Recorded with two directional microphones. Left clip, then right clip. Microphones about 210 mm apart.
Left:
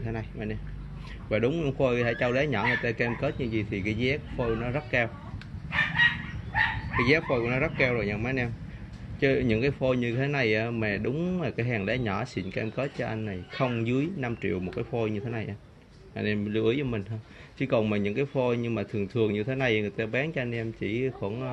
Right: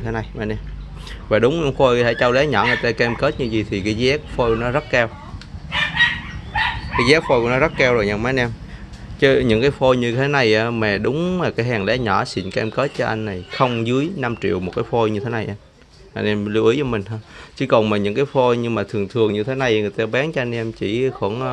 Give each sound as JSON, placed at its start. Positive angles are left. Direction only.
{"t": 0.0, "sound": "speech", "side_deg": -15}
{"t": 7.0, "sound": "speech", "side_deg": -15}